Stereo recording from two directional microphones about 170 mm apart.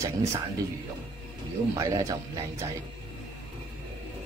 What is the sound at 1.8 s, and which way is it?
Speech, 20° right (ahead or behind).